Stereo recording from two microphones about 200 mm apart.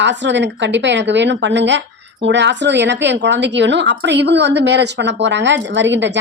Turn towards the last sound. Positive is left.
turn(degrees=-65)  # may be behind; listen again after turning